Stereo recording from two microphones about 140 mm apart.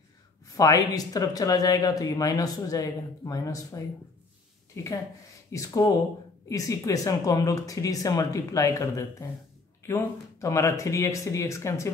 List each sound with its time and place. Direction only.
0.6 s speech: 25° left (ahead or behind)